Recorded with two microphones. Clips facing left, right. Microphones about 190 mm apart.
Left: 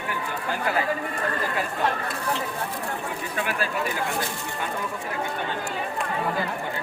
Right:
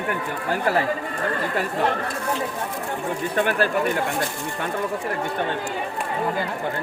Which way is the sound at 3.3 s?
60° right (ahead or behind).